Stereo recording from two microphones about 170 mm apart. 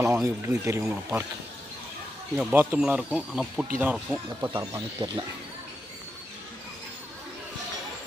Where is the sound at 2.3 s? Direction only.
10° right (ahead or behind).